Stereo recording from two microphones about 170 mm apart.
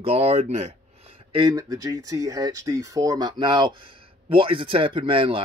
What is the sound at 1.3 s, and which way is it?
A man's voice, 30° right (ahead or behind).